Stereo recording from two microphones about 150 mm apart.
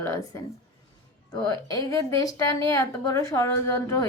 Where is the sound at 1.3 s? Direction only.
25° left (ahead or behind).